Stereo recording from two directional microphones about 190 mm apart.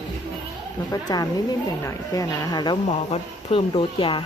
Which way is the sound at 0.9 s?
20° left (ahead or behind).